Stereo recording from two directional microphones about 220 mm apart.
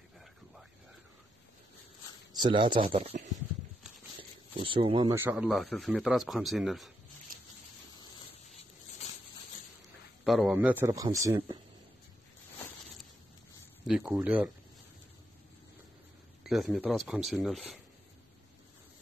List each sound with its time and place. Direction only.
2.3 s speech: 20° right (ahead or behind)
4.2 s a sound: 25° right (ahead or behind)
5.1 s speech: 5° right (ahead or behind)
10.2 s speech: centre (ahead or behind)
13.8 s speech: 5° right (ahead or behind)
16.4 s speech: centre (ahead or behind)